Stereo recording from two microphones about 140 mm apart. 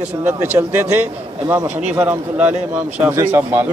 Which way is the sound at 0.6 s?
35° right (ahead or behind).